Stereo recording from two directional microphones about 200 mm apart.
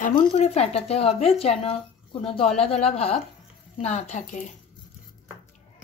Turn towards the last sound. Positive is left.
turn(degrees=35)  # may be behind; listen again after turning